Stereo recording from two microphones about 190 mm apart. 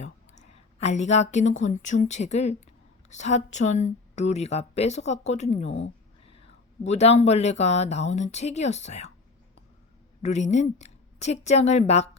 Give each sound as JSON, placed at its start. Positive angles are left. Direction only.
{"t": 0.0, "sound": "a sound", "side_deg": 35}
{"t": 1.8, "sound": "speech", "side_deg": 40}
{"t": 10.2, "sound": "speech", "side_deg": 35}